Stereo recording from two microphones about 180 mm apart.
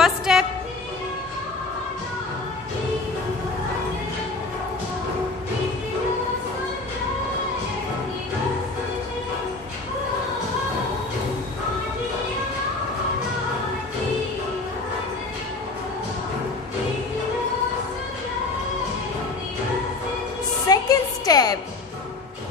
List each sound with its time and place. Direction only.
0.0 s music: 5° right (ahead or behind)
20.6 s music: 20° left (ahead or behind)